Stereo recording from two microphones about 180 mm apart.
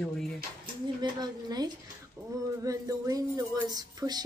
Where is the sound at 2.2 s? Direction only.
15° right (ahead or behind).